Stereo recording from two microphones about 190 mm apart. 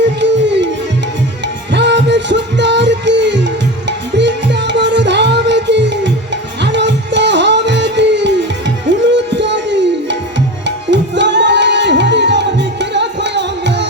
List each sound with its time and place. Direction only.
0.2 s music: 70° right (ahead or behind)
1.7 s music: 65° right (ahead or behind)